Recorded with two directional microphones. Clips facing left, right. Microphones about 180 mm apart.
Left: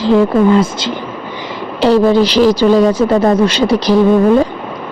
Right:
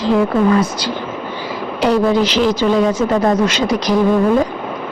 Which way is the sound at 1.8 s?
30° left (ahead or behind).